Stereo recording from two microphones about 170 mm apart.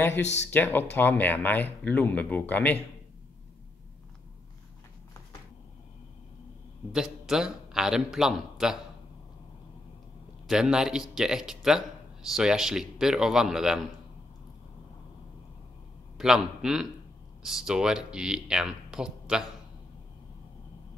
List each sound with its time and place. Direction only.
0.2 s speech: 90° left
0.5 s speech: 10° left (ahead or behind)
6.9 s a man's voice: 5° right (ahead or behind)
10.4 s speech: 5° right (ahead or behind)
16.2 s speech: 5° right (ahead or behind)